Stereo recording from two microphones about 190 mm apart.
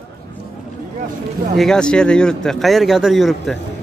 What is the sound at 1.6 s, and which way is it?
Speech, 5° left (ahead or behind).